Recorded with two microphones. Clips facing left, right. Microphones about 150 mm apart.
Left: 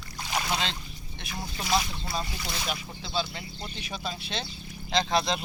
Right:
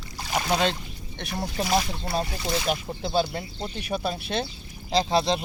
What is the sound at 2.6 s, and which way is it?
Speech, 50° right (ahead or behind).